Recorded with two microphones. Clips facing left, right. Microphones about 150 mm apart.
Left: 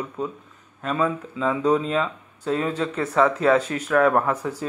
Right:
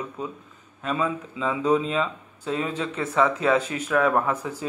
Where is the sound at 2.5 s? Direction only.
40° left (ahead or behind).